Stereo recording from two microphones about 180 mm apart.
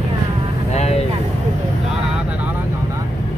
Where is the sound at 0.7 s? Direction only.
35° left (ahead or behind).